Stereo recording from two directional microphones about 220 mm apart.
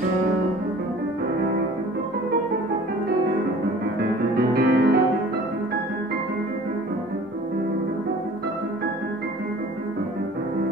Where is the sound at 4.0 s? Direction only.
45° right (ahead or behind).